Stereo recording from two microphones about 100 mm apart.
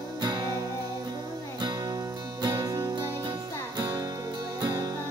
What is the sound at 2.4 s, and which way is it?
Music, 40° right (ahead or behind).